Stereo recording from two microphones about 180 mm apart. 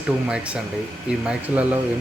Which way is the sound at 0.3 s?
5° right (ahead or behind).